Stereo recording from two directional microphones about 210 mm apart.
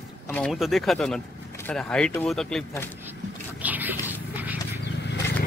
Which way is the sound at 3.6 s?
10° right (ahead or behind).